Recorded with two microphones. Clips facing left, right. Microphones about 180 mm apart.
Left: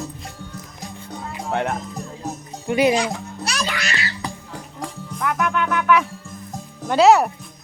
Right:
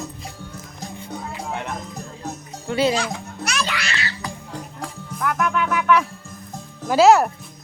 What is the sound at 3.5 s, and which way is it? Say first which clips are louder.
Music: even; 40° left (ahead or behind).